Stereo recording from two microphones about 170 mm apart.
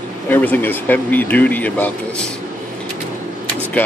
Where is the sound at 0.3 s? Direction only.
10° left (ahead or behind).